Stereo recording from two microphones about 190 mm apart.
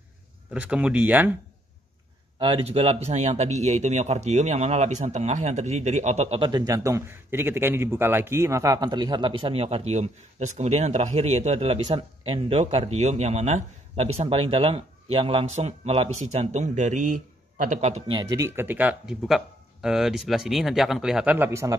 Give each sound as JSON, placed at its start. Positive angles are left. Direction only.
{"t": 0.5, "sound": "speech", "side_deg": -5}
{"t": 2.3, "sound": "speech", "side_deg": -25}